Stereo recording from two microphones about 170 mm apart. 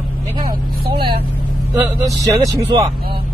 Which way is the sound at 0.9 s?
30° right (ahead or behind).